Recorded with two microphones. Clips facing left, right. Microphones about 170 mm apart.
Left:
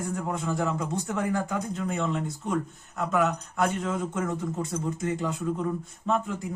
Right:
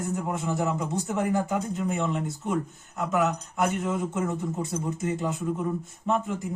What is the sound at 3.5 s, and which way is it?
A man's voice, 20° right (ahead or behind).